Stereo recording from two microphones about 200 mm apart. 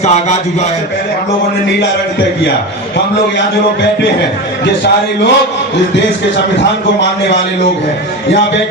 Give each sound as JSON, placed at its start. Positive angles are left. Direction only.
{"t": 0.0, "sound": "a man's voice", "side_deg": 35}
{"t": 4.6, "sound": "a man's voice", "side_deg": 60}